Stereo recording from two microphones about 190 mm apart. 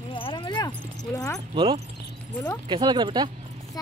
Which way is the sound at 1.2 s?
15° left (ahead or behind).